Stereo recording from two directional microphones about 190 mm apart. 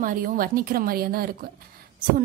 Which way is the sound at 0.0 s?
45° right (ahead or behind).